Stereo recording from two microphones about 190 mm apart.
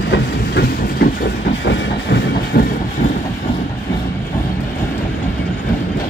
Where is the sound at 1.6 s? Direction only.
65° left (ahead or behind).